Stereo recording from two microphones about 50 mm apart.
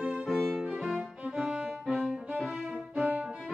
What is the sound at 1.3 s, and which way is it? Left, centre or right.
Music, centre.